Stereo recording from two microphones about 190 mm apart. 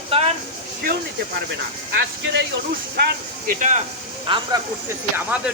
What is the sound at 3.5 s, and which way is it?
Speech, 40° right (ahead or behind).